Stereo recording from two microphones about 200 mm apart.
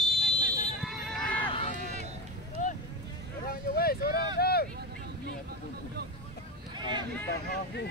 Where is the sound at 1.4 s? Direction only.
30° left (ahead or behind).